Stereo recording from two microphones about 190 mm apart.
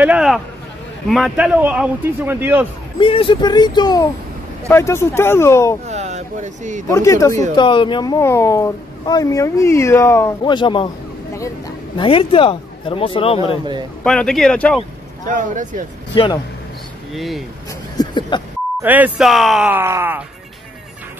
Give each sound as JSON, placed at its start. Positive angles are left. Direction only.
{"t": 0.0, "sound": "a man's voice", "side_deg": -5}
{"t": 3.0, "sound": "a man's voice", "side_deg": 25}
{"t": 5.9, "sound": "speech", "side_deg": -35}
{"t": 6.9, "sound": "speech", "side_deg": 15}
{"t": 10.4, "sound": "a man's voice", "side_deg": 25}
{"t": 12.0, "sound": "a man's voice", "side_deg": 30}
{"t": 14.0, "sound": "speech", "side_deg": 5}
{"t": 15.2, "sound": "speech", "side_deg": -40}
{"t": 17.1, "sound": "speech", "side_deg": 0}
{"t": 17.9, "sound": "a sound", "side_deg": 25}
{"t": 18.8, "sound": "a man's voice", "side_deg": -10}